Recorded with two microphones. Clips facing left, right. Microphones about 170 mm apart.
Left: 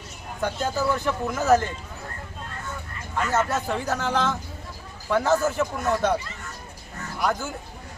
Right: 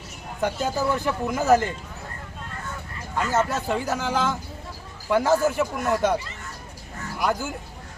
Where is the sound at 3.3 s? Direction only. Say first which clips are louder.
Right 1 dB; 10° right (ahead or behind).